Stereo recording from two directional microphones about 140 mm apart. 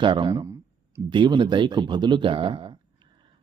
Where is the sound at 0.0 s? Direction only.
35° right (ahead or behind).